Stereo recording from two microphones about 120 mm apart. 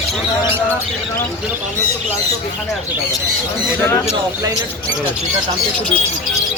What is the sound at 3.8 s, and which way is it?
Speech, 20° left (ahead or behind).